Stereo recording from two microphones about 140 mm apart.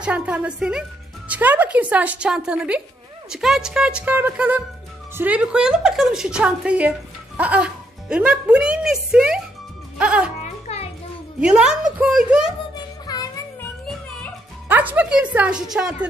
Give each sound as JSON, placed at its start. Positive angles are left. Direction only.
{"t": 0.0, "sound": "speech", "side_deg": -10}
{"t": 10.4, "sound": "music", "side_deg": 50}
{"t": 11.4, "sound": "speech", "side_deg": -5}
{"t": 12.7, "sound": "music", "side_deg": 30}
{"t": 14.7, "sound": "speech", "side_deg": -10}